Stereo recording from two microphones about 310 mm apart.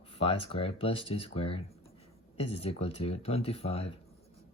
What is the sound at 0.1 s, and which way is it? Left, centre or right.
Speech, centre.